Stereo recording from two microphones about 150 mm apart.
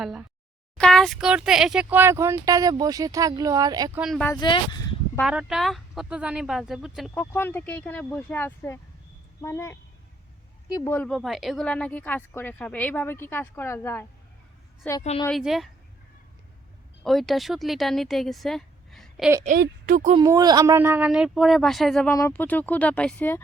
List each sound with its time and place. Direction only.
0.0 s speech: 5° right (ahead or behind); by 3.9 s 25° right (ahead or behind)
4.4 s speech: 30° left (ahead or behind)
5.2 s speech: 5° right (ahead or behind)
7.2 s speech: 15° left (ahead or behind)
10.9 s speech: 5° left (ahead or behind)
15.3 s speech: centre (ahead or behind)
17.0 s speech: centre (ahead or behind)
19.5 s a woman's voice: 85° right
20.1 s speech: 25° right (ahead or behind)
20.7 s speech: 15° right (ahead or behind); by 23.4 s 10° left (ahead or behind)